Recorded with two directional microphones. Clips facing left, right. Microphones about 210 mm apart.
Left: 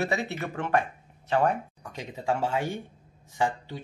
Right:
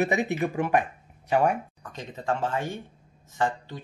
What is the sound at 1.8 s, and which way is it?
Speech, 10° left (ahead or behind).